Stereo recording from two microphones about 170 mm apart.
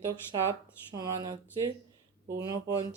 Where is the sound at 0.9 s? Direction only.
20° right (ahead or behind).